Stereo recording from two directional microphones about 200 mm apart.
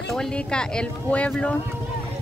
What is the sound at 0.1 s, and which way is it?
Speech, 5° left (ahead or behind).